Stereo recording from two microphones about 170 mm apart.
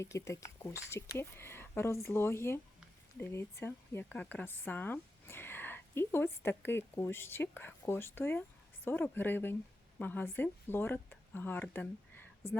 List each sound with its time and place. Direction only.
0.0 s speech: 15° left (ahead or behind)